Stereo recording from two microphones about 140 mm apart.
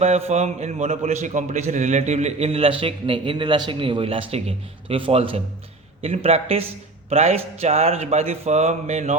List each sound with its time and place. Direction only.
0.0 s a man's voice: 50° right (ahead or behind)